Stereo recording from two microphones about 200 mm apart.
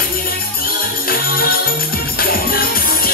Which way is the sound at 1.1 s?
50° left (ahead or behind).